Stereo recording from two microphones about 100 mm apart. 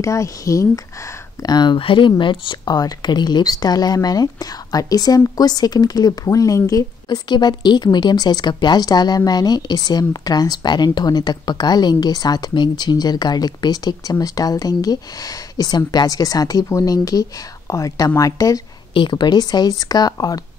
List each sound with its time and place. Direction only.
0.0 s speech: 30° left (ahead or behind)
1.4 s speech: 45° left (ahead or behind)
1.8 s speech: 60° left (ahead or behind)
2.7 s speech: 40° left (ahead or behind)
18.9 s speech: 50° left (ahead or behind)